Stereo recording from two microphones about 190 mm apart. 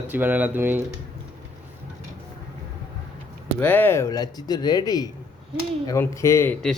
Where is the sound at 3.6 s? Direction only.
10° left (ahead or behind).